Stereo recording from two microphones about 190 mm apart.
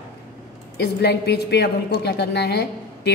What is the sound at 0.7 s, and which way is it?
A woman's voice, 60° left (ahead or behind).